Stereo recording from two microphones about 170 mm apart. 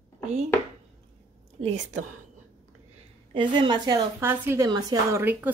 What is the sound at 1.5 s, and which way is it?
Speech, 35° right (ahead or behind).